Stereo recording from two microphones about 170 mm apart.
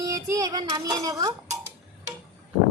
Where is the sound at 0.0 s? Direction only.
20° right (ahead or behind).